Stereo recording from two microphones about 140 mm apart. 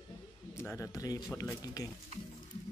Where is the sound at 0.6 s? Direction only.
20° left (ahead or behind).